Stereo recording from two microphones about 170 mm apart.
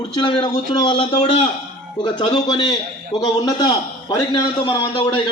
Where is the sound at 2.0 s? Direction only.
30° left (ahead or behind).